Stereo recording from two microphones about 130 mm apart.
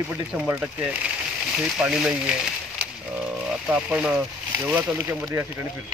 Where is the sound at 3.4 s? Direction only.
10° right (ahead or behind).